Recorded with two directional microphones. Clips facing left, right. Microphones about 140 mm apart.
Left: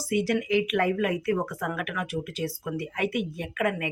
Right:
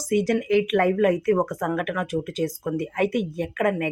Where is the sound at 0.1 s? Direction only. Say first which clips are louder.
Right 4 dB; 45° right (ahead or behind).